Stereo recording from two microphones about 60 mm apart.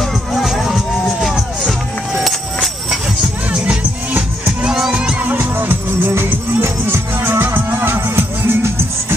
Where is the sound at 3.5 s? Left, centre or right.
Centre.